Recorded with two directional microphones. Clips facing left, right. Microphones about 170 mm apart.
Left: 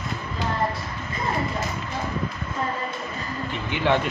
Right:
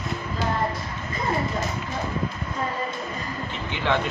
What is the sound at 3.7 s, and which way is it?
Speech, 15° left (ahead or behind).